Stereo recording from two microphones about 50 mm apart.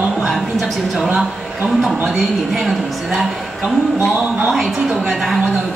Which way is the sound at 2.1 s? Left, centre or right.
Centre.